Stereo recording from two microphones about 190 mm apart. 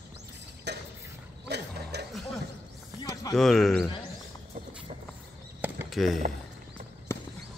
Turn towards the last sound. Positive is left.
turn(degrees=15)  # may be behind; listen again after turning